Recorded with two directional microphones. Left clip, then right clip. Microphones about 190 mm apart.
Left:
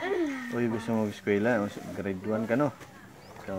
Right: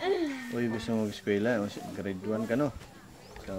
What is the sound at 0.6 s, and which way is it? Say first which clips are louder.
Speech: left 2 dB; 10° left (ahead or behind).